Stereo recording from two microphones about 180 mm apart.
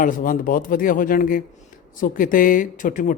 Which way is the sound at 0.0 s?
50° left (ahead or behind).